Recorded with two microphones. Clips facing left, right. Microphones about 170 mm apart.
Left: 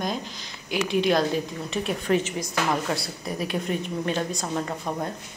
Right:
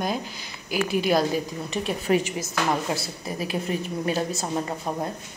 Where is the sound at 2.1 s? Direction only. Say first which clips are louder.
Right 2 dB; 10° right (ahead or behind).